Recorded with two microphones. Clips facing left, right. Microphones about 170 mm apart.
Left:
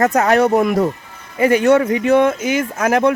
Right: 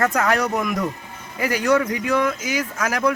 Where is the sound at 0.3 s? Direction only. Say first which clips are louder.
Left 8 dB; 25° left (ahead or behind).